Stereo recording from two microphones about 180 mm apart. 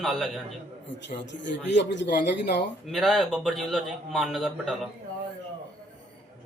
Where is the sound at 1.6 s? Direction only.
80° left.